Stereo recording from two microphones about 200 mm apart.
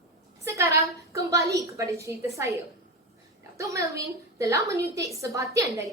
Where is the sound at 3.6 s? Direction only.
15° right (ahead or behind).